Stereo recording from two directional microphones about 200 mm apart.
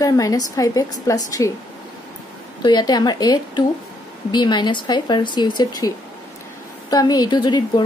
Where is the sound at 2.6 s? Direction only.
20° left (ahead or behind).